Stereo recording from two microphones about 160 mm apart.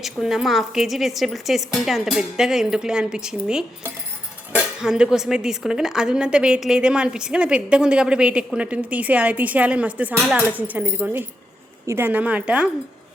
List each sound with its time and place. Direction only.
0.0 s a woman's voice: centre (ahead or behind)
4.5 s music: 5° right (ahead or behind)
5.1 s a woman's voice: 5° right (ahead or behind)